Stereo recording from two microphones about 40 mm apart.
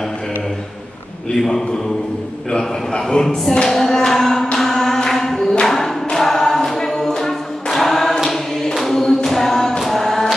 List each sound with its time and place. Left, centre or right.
2.5 s a man's voice: left
3.2 s music: centre
4.6 s choir: centre
8.7 s music: centre